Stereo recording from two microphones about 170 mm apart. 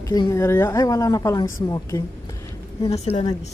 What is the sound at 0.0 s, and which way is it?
A woman's voice, 20° left (ahead or behind).